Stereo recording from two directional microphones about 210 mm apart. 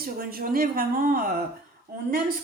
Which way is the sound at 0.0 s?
45° right (ahead or behind).